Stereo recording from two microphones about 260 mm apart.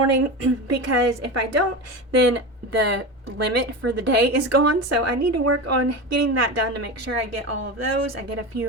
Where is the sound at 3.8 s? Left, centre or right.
Right.